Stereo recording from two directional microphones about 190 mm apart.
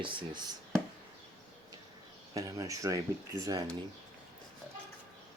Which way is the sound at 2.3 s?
15° right (ahead or behind).